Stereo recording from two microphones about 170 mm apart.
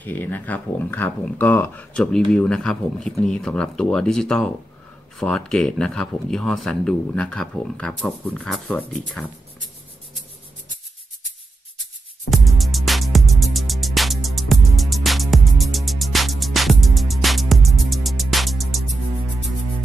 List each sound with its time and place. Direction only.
0.0 s speech: 10° left (ahead or behind)
12.3 s music: centre (ahead or behind)